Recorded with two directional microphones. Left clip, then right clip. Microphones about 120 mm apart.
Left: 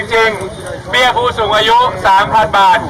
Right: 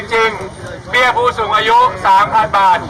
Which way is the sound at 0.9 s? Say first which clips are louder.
Left 1 dB; 5° left (ahead or behind).